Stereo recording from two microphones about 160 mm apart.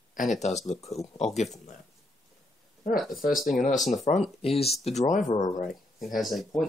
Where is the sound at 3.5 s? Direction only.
50° left (ahead or behind).